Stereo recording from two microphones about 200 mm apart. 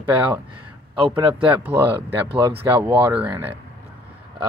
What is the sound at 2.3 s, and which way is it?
Speech, 55° right (ahead or behind).